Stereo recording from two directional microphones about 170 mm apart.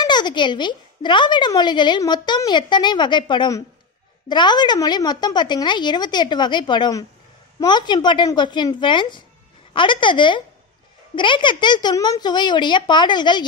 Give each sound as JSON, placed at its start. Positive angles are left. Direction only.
{"t": 0.0, "sound": "speech", "side_deg": 25}